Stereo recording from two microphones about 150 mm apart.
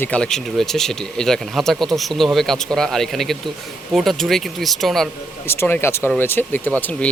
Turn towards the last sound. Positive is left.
turn(degrees=10)  # may be behind; listen again after turning